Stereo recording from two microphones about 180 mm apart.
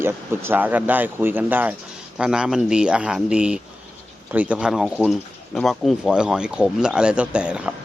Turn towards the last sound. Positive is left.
turn(degrees=-5)  # may be behind; listen again after turning